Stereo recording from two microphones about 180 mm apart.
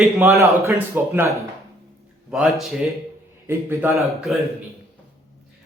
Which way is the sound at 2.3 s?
Centre (ahead or behind).